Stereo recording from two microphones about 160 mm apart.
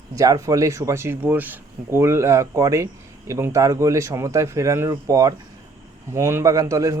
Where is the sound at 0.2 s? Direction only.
20° right (ahead or behind).